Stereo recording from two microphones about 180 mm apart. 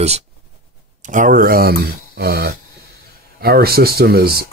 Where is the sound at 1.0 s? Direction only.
45° right (ahead or behind).